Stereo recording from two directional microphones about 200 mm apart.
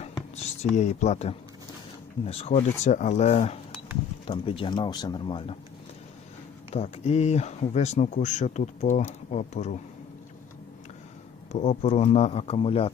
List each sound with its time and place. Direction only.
0.0 s a sound: 35° left (ahead or behind)
2.2 s speech: 30° left (ahead or behind)
6.7 s speech: 30° left (ahead or behind)
11.5 s speech: 35° left (ahead or behind)